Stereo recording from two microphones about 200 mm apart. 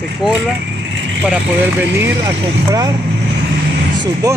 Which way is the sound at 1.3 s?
10° right (ahead or behind).